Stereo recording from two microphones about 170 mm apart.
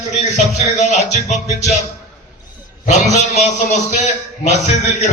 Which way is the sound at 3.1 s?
40° left (ahead or behind).